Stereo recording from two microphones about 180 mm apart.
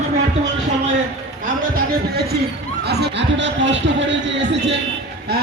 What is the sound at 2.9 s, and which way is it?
Speech, 70° right (ahead or behind).